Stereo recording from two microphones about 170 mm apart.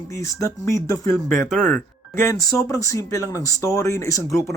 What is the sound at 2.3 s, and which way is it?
Speech, 20° left (ahead or behind).